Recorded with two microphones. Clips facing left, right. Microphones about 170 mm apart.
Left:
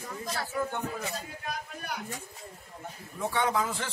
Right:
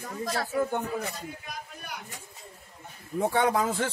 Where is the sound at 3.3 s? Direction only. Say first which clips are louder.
Right 2 dB; 50° right (ahead or behind).